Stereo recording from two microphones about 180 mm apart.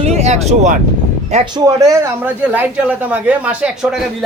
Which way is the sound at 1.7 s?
15° right (ahead or behind).